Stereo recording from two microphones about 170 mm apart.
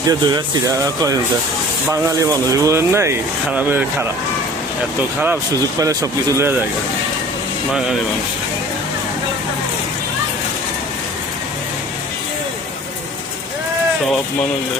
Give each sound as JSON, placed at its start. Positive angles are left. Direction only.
{"t": 0.1, "sound": "speech", "side_deg": -20}
{"t": 5.8, "sound": "speech", "side_deg": -20}